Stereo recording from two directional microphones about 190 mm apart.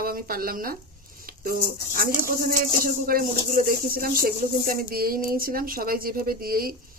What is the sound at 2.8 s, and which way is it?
Speech, 50° right (ahead or behind).